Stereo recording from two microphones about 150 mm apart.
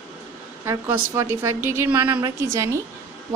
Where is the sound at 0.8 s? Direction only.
15° right (ahead or behind).